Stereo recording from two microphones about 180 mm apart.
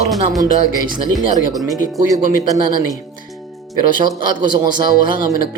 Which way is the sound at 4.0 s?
25° right (ahead or behind).